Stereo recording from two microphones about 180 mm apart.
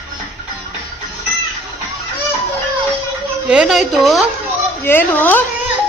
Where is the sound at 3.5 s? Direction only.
5° right (ahead or behind).